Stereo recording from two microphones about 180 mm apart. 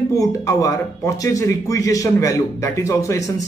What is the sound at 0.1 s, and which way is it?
Speech, 20° left (ahead or behind).